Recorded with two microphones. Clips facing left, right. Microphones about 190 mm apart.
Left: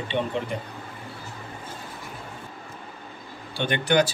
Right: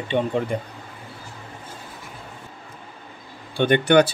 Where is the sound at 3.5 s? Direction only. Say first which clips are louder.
Right 6 dB; 55° right (ahead or behind).